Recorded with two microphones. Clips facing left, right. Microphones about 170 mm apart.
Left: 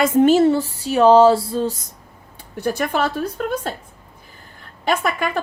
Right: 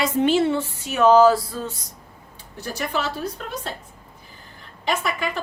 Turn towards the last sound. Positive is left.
turn(degrees=50)  # may be behind; listen again after turning